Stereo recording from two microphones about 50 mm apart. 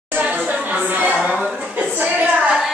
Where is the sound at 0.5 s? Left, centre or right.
Right.